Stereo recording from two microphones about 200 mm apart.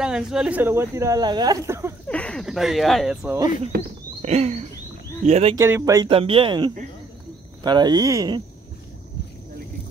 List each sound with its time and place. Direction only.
0.0 s speech: 5° right (ahead or behind)
2.0 s speech: 5° left (ahead or behind)
3.7 s speech: 50° right (ahead or behind)
4.2 s a sound: 35° right (ahead or behind)
5.6 s speech: 15° right (ahead or behind)